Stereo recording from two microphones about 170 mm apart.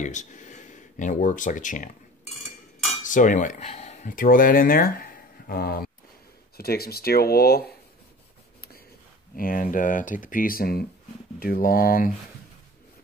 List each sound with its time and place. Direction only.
0.0 s speech: 45° left (ahead or behind)
3.1 s speech: 50° left (ahead or behind)
9.4 s speech: 55° left (ahead or behind)